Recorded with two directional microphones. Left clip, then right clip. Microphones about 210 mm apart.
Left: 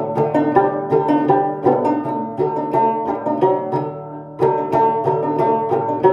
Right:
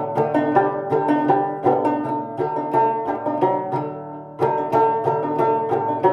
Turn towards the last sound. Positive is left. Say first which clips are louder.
# left 3 dB
turn(degrees=-20)  # may be behind; listen again after turning